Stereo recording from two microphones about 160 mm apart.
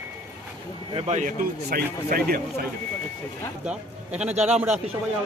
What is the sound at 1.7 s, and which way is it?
Speech, 70° right (ahead or behind).